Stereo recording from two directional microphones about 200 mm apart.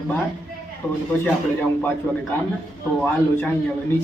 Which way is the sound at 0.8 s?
10° left (ahead or behind).